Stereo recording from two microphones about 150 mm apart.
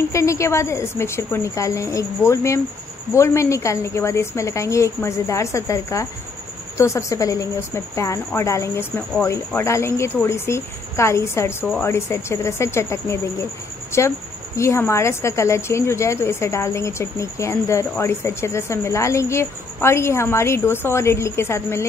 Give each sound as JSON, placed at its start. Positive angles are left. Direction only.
{"t": 0.1, "sound": "a woman's voice", "side_deg": 20}